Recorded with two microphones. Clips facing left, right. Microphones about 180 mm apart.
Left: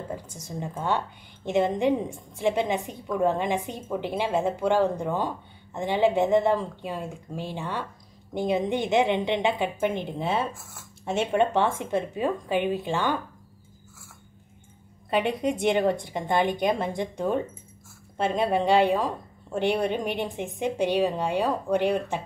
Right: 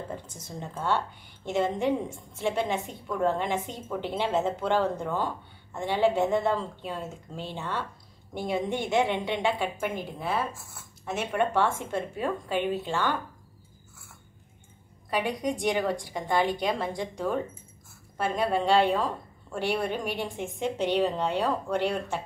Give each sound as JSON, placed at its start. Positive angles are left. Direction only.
{"t": 0.1, "sound": "a woman's voice", "side_deg": 10}
{"t": 15.0, "sound": "a woman's voice", "side_deg": 25}